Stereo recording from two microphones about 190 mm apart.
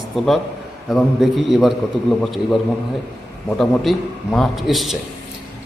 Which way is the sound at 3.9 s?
Centre (ahead or behind).